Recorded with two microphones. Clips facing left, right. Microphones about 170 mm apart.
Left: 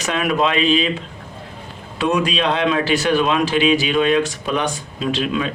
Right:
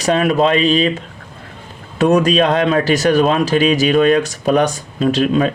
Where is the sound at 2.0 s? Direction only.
45° right (ahead or behind).